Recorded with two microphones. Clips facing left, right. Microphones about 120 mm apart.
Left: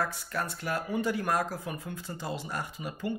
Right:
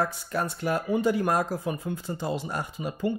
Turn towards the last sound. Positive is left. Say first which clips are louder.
# right 6 dB
turn(degrees=-25)  # may be behind; listen again after turning